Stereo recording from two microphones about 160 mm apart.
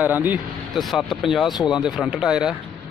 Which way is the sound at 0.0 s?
10° right (ahead or behind).